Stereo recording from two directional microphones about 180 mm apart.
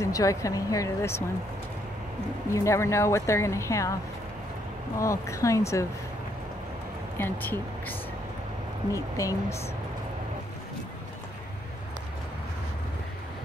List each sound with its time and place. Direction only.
0.0 s a woman's voice: 20° left (ahead or behind)
2.5 s a woman's voice: 15° left (ahead or behind)
4.9 s a woman's voice: 15° left (ahead or behind)
7.2 s a woman's voice: 10° left (ahead or behind)